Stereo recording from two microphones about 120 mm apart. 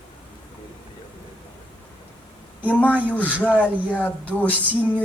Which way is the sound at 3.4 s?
10° right (ahead or behind).